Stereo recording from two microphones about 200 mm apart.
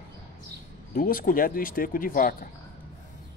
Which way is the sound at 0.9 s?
45° left (ahead or behind).